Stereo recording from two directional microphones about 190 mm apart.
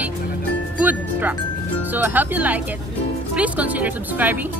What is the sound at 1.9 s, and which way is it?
Speech, 10° right (ahead or behind).